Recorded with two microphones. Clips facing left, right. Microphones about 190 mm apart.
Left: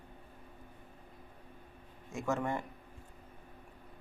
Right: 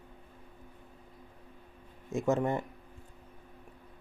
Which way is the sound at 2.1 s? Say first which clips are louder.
Right 5 dB; 20° right (ahead or behind).